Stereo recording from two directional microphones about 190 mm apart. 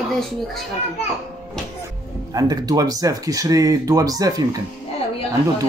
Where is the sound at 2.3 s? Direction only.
20° right (ahead or behind).